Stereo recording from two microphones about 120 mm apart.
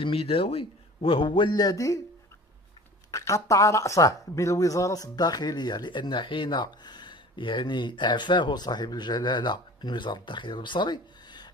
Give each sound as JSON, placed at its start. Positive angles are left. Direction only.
{"t": 0.0, "sound": "a man's voice", "side_deg": 50}
{"t": 3.1, "sound": "speech", "side_deg": 25}